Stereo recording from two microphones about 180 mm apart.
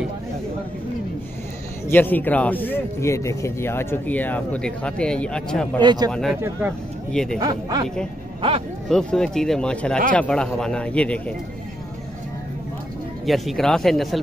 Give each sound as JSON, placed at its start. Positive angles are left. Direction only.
{"t": 1.9, "sound": "a man's voice", "side_deg": 10}
{"t": 5.8, "sound": "speech", "side_deg": -25}
{"t": 7.1, "sound": "speech", "side_deg": 5}
{"t": 7.3, "sound": "speech", "side_deg": -20}
{"t": 8.4, "sound": "speech", "side_deg": -30}
{"t": 8.8, "sound": "a man's voice", "side_deg": 0}
{"t": 13.2, "sound": "speech", "side_deg": 0}